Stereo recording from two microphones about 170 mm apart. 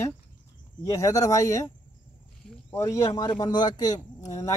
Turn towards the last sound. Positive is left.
turn(degrees=20)  # may be behind; listen again after turning